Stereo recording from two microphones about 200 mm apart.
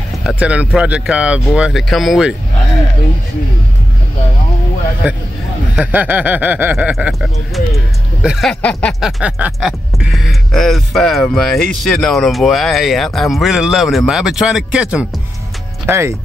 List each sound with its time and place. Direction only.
0.2 s speech: 5° right (ahead or behind)
5.8 s speech: 5° right (ahead or behind)